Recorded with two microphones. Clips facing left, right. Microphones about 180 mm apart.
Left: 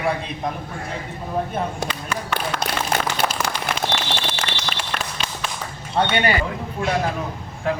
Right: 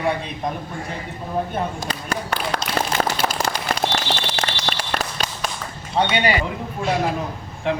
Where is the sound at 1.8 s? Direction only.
40° right (ahead or behind).